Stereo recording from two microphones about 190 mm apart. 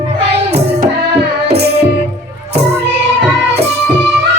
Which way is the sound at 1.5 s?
60° right (ahead or behind).